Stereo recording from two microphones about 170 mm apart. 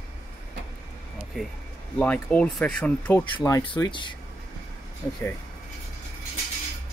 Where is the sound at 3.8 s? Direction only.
20° left (ahead or behind).